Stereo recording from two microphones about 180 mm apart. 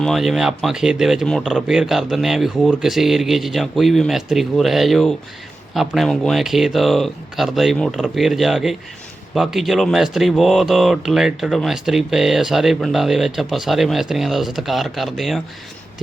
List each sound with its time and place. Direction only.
0.0 s speech: centre (ahead or behind)